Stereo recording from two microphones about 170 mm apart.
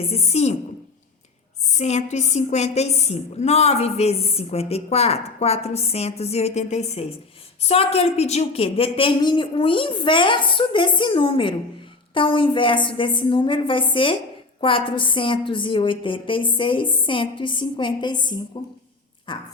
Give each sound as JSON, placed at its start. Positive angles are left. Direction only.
{"t": 0.0, "sound": "a woman's voice", "side_deg": 35}
{"t": 1.7, "sound": "a woman's voice", "side_deg": 40}